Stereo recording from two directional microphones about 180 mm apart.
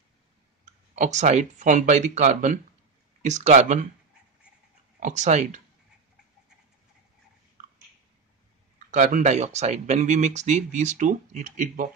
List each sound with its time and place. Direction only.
0.9 s speech: 40° right (ahead or behind)
5.0 s speech: 40° right (ahead or behind)
8.7 s speech: 45° right (ahead or behind)